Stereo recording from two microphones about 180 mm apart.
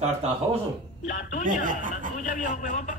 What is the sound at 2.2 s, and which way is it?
Speech, 45° left (ahead or behind).